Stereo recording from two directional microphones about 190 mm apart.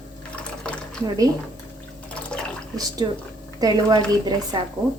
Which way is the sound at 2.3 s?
5° left (ahead or behind).